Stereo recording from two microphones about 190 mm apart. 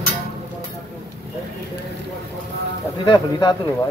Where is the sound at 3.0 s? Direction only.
20° left (ahead or behind).